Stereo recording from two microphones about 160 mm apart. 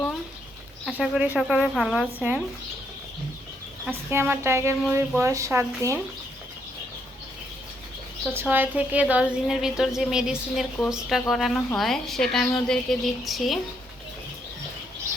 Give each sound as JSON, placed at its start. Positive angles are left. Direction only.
{"t": 0.9, "sound": "a woman's voice", "side_deg": -5}
{"t": 2.1, "sound": "a woman's voice", "side_deg": -10}
{"t": 3.8, "sound": "a woman's voice", "side_deg": -15}
{"t": 8.3, "sound": "a woman's voice", "side_deg": -15}